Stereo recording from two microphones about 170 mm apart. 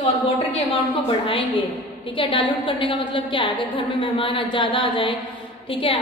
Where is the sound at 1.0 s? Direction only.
30° left (ahead or behind).